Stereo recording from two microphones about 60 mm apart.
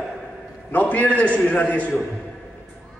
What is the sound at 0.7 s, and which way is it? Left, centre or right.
A man's voice, left.